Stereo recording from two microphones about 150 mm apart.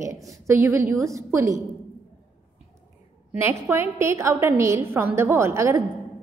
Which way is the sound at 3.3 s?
15° right (ahead or behind).